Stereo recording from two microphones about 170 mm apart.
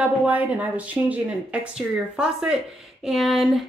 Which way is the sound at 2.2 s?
5° right (ahead or behind).